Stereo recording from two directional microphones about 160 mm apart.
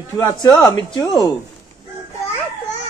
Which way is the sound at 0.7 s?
25° left (ahead or behind).